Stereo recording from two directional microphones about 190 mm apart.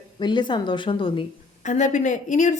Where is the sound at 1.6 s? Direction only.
40° left (ahead or behind).